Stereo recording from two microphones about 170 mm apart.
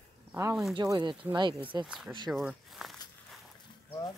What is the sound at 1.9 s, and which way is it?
Speech, 5° right (ahead or behind).